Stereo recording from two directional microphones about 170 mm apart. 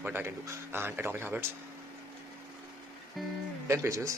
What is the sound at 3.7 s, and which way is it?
Speech, 15° right (ahead or behind).